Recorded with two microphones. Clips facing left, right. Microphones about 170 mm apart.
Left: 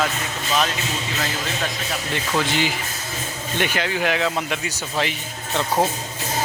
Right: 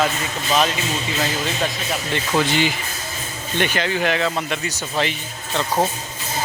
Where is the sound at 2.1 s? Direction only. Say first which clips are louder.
Right 3 dB; centre (ahead or behind).